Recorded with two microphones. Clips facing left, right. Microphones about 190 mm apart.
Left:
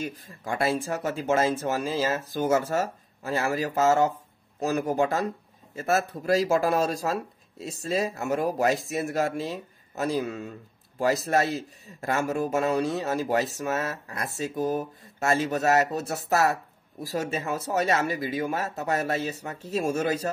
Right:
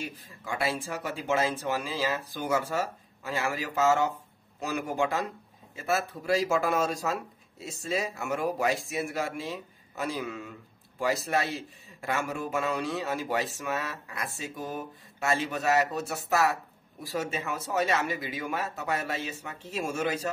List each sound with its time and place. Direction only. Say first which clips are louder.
0.0 s speech: left 5 dB; 45° left (ahead or behind)